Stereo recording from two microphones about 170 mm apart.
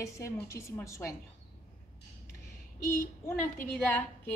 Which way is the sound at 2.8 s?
15° left (ahead or behind).